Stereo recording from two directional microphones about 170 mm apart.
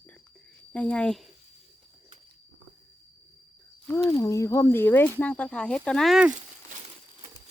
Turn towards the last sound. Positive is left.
turn(degrees=0)  # may be behind; listen again after turning